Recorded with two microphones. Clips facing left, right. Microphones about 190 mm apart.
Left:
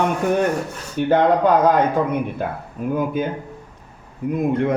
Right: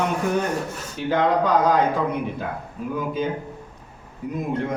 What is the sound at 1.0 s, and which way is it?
Speech, 55° left (ahead or behind).